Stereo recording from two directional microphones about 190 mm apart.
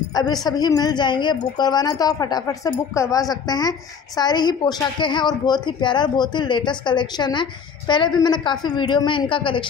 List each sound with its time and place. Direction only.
0.1 s a woman's voice: 20° left (ahead or behind)